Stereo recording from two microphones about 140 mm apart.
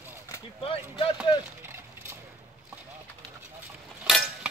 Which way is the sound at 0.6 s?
40° left (ahead or behind).